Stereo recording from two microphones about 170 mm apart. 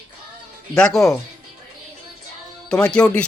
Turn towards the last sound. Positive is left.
turn(degrees=5)  # may be behind; listen again after turning